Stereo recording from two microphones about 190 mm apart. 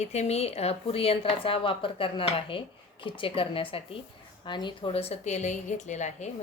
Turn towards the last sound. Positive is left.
turn(degrees=40)  # may be behind; listen again after turning